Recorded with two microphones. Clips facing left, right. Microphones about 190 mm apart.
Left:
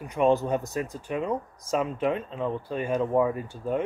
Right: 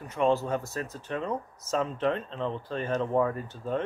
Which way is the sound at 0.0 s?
15° left (ahead or behind).